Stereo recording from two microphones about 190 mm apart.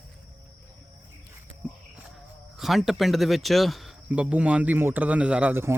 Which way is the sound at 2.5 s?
Centre (ahead or behind).